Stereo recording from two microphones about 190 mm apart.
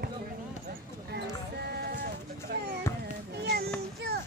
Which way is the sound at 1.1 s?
55° right (ahead or behind).